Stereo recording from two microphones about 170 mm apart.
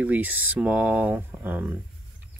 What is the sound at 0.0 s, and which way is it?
Speech, 10° right (ahead or behind).